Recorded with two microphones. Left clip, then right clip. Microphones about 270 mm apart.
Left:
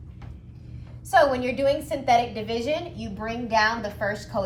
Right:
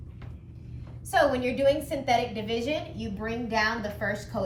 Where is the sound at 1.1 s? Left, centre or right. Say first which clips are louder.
Left 4 dB; centre.